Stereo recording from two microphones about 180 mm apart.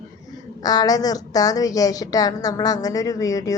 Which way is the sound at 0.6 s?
20° left (ahead or behind).